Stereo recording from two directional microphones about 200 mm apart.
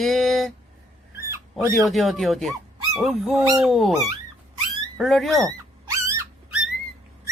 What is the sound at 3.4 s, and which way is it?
Speech, 15° right (ahead or behind).